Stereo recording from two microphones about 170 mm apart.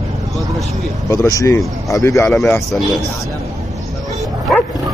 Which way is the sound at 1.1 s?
20° left (ahead or behind).